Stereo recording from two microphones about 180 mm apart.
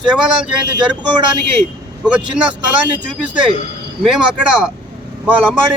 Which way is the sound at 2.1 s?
5° right (ahead or behind).